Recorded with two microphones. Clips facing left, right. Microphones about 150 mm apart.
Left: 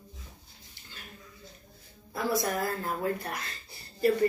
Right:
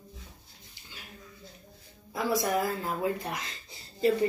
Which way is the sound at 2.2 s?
15° right (ahead or behind).